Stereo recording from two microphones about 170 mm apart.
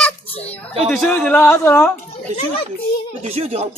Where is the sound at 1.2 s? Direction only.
10° left (ahead or behind).